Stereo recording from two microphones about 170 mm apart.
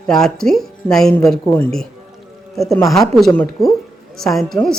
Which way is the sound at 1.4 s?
10° left (ahead or behind).